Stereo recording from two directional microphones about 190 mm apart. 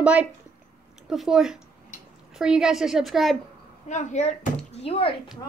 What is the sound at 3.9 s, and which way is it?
Speech, 40° left (ahead or behind).